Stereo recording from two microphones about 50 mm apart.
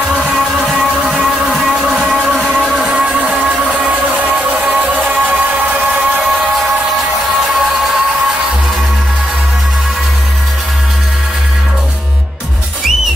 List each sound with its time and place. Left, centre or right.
0.3 s music: centre
1.7 s a sound: centre
2.3 s vehicle: right
2.7 s a sound: centre
3.9 s music: right
4.6 s music: centre